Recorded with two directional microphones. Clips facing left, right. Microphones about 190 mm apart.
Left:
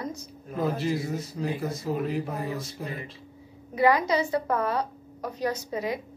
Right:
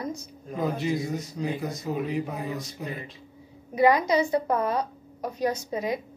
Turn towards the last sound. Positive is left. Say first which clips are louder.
# right 1 dB
turn(degrees=-15)  # may be behind; listen again after turning